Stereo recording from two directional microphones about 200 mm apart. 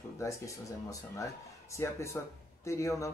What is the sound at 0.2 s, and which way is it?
Speech, 15° left (ahead or behind).